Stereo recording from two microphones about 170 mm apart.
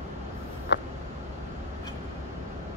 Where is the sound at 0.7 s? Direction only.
90° left.